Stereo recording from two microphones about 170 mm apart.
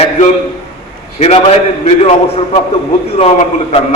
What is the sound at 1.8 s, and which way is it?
A man's voice, 35° left (ahead or behind).